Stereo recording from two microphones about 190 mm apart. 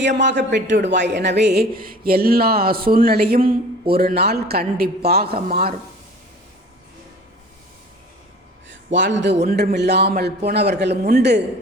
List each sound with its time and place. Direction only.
0.0 s speech: 70° right (ahead or behind); by 5.7 s 50° right (ahead or behind)
8.7 s a man's voice: 70° right (ahead or behind)
9.5 s speech: 55° right (ahead or behind)